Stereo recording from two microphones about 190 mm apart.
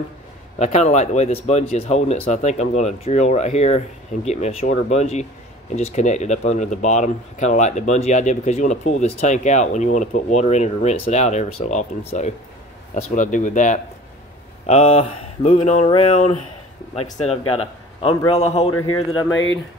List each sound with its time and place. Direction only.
0.6 s speech: 35° left (ahead or behind)
19.3 s speech: 70° left (ahead or behind)